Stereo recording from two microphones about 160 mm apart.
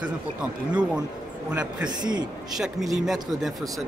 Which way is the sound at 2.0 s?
25° right (ahead or behind).